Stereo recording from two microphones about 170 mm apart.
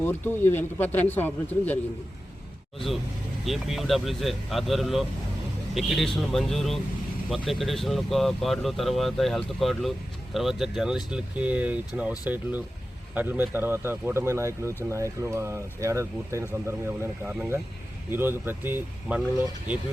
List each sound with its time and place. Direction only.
0.0 s a man's voice: 10° left (ahead or behind); by 19.2 s 10° right (ahead or behind)